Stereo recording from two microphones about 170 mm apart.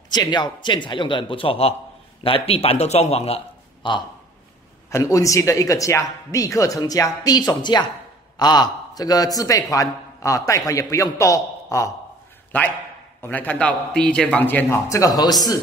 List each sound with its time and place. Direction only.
0.1 s a man's voice: 25° left (ahead or behind)
4.8 s a man's voice: 20° left (ahead or behind)
13.2 s a man's voice: 10° left (ahead or behind)